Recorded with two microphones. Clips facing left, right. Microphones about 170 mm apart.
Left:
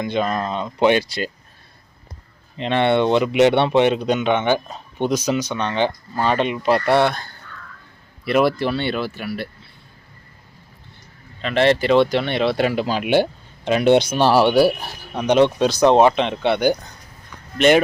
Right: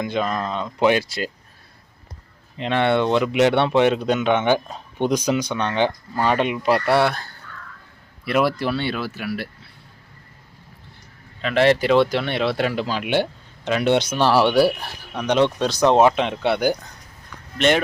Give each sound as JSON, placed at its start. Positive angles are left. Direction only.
{"t": 0.0, "sound": "speech", "side_deg": 0}
{"t": 2.6, "sound": "speech", "side_deg": -5}
{"t": 11.4, "sound": "speech", "side_deg": -5}
{"t": 14.2, "sound": "speech", "side_deg": 25}
{"t": 15.1, "sound": "speech", "side_deg": 10}